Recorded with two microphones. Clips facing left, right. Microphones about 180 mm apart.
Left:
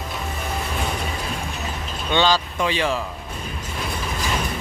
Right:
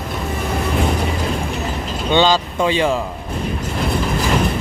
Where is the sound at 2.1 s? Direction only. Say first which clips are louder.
Right 4 dB; 20° right (ahead or behind).